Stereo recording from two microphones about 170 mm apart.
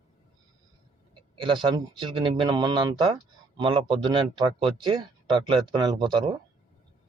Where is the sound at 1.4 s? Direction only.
30° right (ahead or behind).